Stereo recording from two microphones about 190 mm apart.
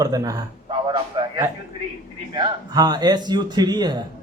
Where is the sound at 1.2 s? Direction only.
25° right (ahead or behind).